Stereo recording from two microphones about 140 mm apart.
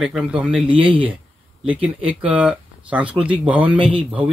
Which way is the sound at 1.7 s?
10° right (ahead or behind).